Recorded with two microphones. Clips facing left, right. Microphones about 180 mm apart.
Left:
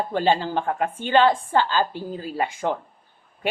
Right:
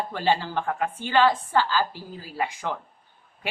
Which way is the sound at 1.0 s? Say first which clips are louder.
Left 3 dB; 25° left (ahead or behind).